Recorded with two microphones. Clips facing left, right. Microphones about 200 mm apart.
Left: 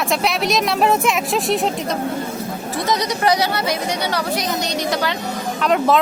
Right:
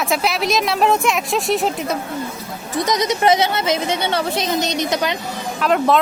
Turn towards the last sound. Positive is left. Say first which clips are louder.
# even
turn(degrees=0)  # may be behind; listen again after turning